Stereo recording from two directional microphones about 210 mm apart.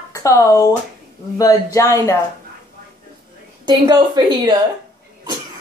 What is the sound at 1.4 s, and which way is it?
Speech, 15° left (ahead or behind).